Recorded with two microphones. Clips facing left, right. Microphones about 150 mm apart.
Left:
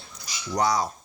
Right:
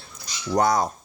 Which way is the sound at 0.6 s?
50° right (ahead or behind).